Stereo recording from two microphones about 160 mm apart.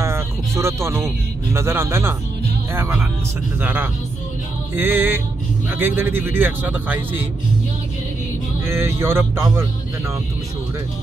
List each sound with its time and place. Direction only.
0.0 s music: 15° right (ahead or behind)
1.5 s a man's voice: 15° right (ahead or behind)
8.6 s a man's voice: 15° right (ahead or behind)